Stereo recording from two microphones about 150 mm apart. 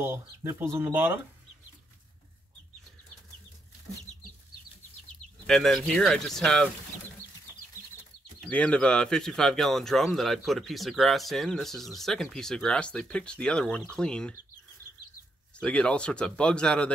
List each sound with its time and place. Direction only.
0.0 s speech: 15° right (ahead or behind)
5.5 s speech: centre (ahead or behind)
8.5 s speech: 10° left (ahead or behind)
15.5 s speech: 5° left (ahead or behind)